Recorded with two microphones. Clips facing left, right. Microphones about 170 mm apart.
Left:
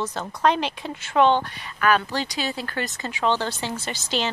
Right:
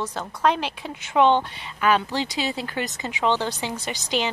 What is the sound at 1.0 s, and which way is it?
Speech, 15° right (ahead or behind).